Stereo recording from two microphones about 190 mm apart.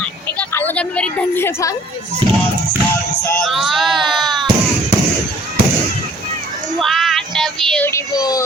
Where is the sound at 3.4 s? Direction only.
Centre (ahead or behind).